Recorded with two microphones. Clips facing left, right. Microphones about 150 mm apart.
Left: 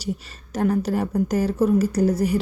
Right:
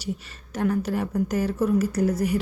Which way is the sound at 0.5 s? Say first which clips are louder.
Left 3 dB; 35° left (ahead or behind).